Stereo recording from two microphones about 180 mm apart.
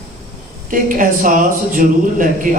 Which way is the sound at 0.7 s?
50° right (ahead or behind).